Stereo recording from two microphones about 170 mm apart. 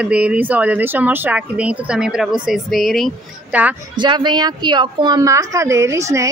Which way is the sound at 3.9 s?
25° right (ahead or behind).